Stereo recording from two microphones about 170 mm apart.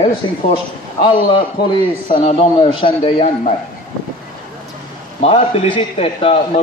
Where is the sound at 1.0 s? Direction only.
30° left (ahead or behind).